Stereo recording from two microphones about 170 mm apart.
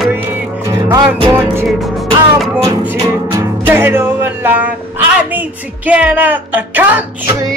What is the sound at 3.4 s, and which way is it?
Music, 10° right (ahead or behind).